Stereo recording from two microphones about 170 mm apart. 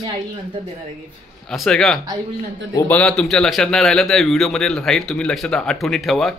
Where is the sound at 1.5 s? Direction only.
Centre (ahead or behind).